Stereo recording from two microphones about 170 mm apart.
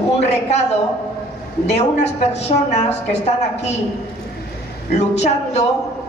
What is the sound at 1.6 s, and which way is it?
A woman's voice, 40° left (ahead or behind).